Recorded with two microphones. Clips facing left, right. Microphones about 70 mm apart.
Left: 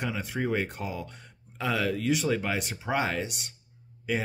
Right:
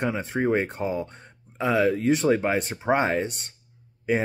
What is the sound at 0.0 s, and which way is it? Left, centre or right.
Speech, right.